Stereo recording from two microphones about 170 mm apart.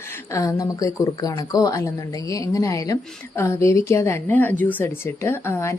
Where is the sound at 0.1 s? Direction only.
15° left (ahead or behind).